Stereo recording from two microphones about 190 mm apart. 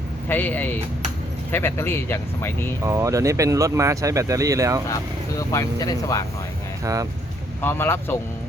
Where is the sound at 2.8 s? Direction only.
15° right (ahead or behind).